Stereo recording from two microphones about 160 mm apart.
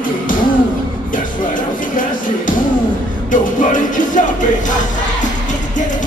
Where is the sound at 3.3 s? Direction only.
55° left (ahead or behind).